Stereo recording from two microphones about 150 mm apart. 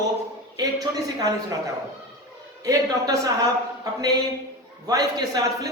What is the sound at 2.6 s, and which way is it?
Speech, 25° right (ahead or behind).